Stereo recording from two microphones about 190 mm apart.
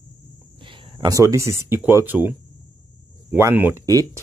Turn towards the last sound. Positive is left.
turn(degrees=-15)  # may be behind; listen again after turning